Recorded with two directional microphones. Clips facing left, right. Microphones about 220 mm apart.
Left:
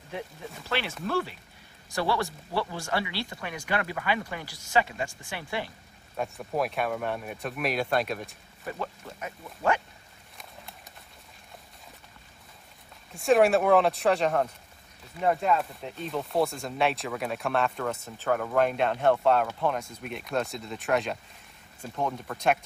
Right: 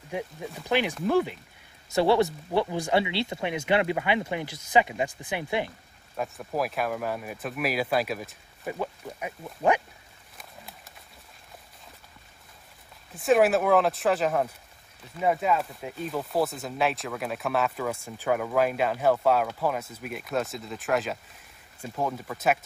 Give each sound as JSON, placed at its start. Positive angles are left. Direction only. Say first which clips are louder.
{"t": 0.7, "sound": "speech", "louder": "right 6 dB", "side_deg": -15}
{"t": 6.1, "sound": "speech", "louder": "even", "side_deg": 0}
{"t": 8.6, "sound": "speech", "louder": "right 3 dB", "side_deg": -15}
{"t": 13.1, "sound": "speech", "louder": "even", "side_deg": 0}